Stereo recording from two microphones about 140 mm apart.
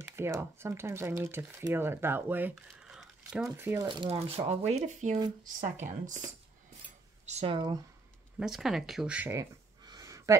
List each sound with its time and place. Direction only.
0.0 s speech: 20° right (ahead or behind)
2.5 s speech: 5° right (ahead or behind)
3.8 s speech: 35° right (ahead or behind); by 7.5 s 50° right (ahead or behind)
7.5 s speech: 30° right (ahead or behind)
8.4 s speech: 5° right (ahead or behind)
9.3 s a sound: 25° right (ahead or behind)